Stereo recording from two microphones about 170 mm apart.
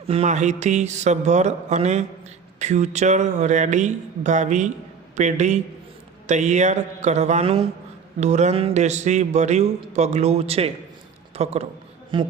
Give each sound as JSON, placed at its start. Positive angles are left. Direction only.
{"t": 0.1, "sound": "a man's voice", "side_deg": -40}